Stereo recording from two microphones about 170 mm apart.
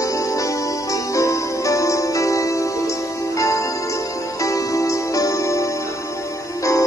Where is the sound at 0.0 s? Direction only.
20° left (ahead or behind).